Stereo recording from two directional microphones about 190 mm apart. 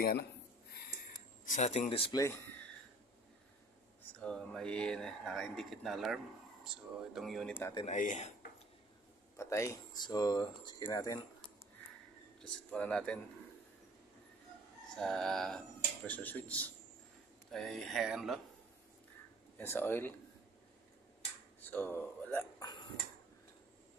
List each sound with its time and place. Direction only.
1.5 s speech: 35° left (ahead or behind)
2.2 s speech: 10° left (ahead or behind)
4.2 s speech: 5° left (ahead or behind)
7.9 s speech: 40° left (ahead or behind)
9.4 s speech: 15° left (ahead or behind)
12.4 s speech: 5° left (ahead or behind)
15.0 s speech: centre (ahead or behind)
19.6 s speech: 10° left (ahead or behind)
21.5 s a sound: 10° left (ahead or behind)
22.6 s a sound: 20° left (ahead or behind)